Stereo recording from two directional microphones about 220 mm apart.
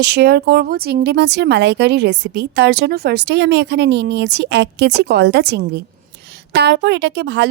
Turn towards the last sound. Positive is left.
turn(degrees=-50)  # may be behind; listen again after turning